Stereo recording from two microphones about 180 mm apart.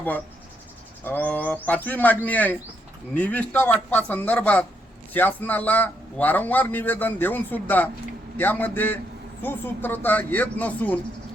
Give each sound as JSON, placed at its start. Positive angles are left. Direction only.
{"t": 1.0, "sound": "a man's voice", "side_deg": 10}